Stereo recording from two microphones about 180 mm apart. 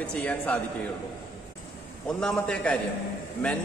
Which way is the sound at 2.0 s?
5° left (ahead or behind).